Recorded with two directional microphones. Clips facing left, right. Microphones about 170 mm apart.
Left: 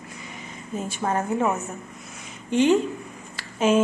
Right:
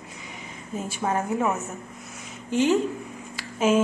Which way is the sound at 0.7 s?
5° right (ahead or behind).